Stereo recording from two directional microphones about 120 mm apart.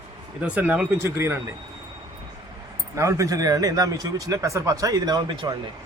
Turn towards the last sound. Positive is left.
turn(degrees=-40)  # may be behind; listen again after turning